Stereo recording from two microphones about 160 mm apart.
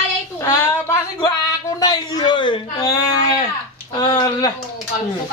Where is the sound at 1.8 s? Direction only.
25° left (ahead or behind).